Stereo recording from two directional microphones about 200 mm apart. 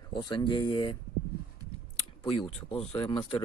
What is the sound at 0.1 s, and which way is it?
Speech, 25° left (ahead or behind).